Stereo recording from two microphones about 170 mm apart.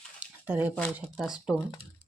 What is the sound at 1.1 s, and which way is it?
Speech, 5° right (ahead or behind).